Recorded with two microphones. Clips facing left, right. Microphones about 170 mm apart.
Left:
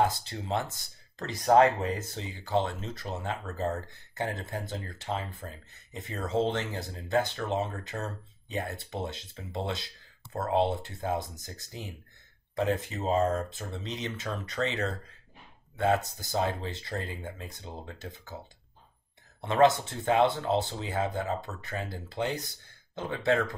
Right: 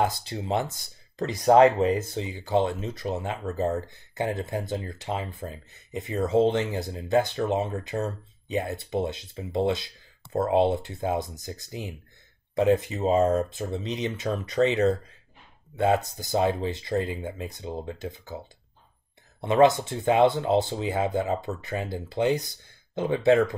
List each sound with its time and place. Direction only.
0.2 s speech: 15° right (ahead or behind)
13.1 s speech: 20° right (ahead or behind)